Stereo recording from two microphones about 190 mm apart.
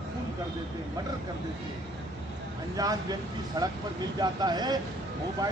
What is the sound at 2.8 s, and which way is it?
Speech, 20° right (ahead or behind).